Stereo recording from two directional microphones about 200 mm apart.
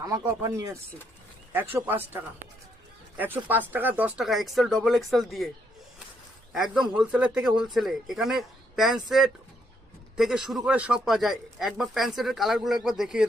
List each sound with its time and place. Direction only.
0.0 s speech: 20° right (ahead or behind)
3.2 s speech: 10° right (ahead or behind)
6.5 s speech: centre (ahead or behind)